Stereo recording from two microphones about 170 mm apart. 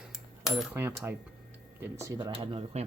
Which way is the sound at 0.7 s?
10° right (ahead or behind).